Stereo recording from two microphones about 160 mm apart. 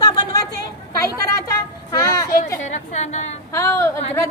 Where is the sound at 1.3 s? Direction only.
20° left (ahead or behind).